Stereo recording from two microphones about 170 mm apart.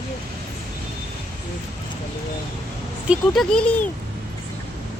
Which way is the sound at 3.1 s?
5° left (ahead or behind).